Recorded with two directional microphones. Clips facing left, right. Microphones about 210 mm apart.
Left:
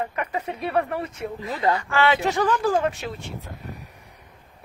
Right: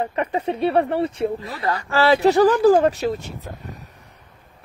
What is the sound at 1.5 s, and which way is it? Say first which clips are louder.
Speech: left 2 dB; 20° left (ahead or behind).